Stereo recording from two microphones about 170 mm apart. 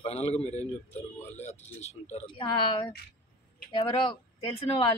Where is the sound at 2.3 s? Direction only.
30° left (ahead or behind).